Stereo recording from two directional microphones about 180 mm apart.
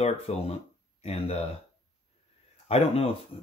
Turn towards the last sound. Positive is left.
turn(degrees=35)  # may be behind; listen again after turning